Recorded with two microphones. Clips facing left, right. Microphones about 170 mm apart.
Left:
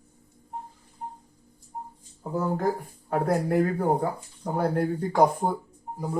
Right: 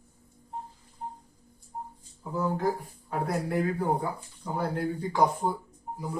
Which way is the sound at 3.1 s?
50° left (ahead or behind).